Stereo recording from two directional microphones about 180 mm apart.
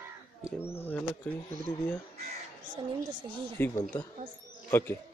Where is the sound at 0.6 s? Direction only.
10° left (ahead or behind).